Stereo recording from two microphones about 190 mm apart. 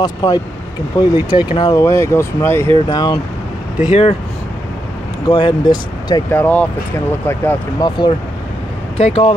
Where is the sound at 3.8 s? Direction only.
30° left (ahead or behind).